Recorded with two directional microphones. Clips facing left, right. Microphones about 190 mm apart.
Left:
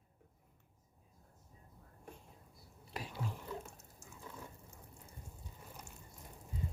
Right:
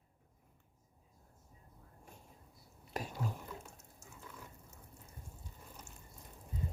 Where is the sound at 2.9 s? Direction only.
45° right (ahead or behind).